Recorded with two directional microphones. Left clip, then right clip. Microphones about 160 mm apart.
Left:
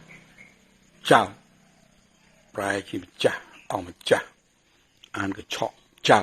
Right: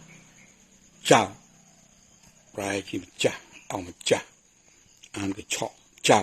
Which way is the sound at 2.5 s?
15° right (ahead or behind).